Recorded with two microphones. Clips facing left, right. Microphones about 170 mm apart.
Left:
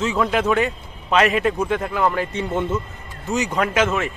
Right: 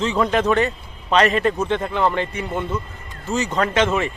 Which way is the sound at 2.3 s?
25° left (ahead or behind).